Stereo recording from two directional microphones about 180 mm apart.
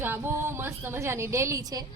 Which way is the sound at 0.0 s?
10° right (ahead or behind).